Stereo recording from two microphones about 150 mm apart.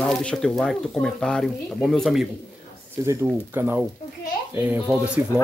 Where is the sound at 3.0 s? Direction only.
20° right (ahead or behind).